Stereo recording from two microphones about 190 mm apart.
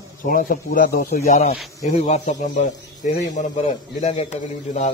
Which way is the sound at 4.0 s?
35° left (ahead or behind).